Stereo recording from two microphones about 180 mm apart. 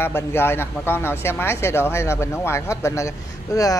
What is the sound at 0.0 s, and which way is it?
Speech, 15° left (ahead or behind).